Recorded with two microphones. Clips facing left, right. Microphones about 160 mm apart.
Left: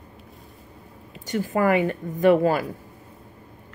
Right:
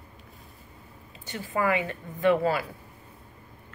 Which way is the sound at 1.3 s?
45° left (ahead or behind).